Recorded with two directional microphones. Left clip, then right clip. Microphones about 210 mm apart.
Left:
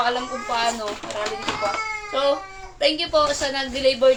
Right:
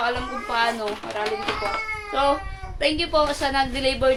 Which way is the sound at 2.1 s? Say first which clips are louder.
Even; 15° right (ahead or behind).